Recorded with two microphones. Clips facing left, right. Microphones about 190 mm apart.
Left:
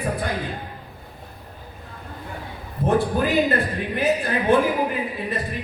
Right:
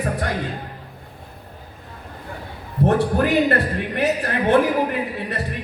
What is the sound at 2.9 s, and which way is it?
A man's voice, 70° right (ahead or behind).